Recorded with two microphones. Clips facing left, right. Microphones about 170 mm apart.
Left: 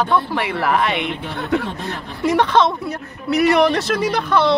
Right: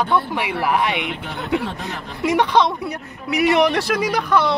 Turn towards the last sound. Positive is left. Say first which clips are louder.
# left 1 dB
turn(degrees=-10)  # may be behind; listen again after turning